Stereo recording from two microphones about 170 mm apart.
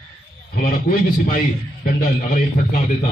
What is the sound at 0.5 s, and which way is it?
A man's voice, 60° left (ahead or behind).